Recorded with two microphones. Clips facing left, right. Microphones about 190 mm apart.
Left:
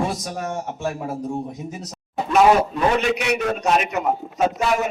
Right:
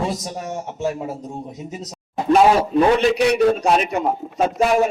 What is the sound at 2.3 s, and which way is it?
A man's voice, 35° right (ahead or behind).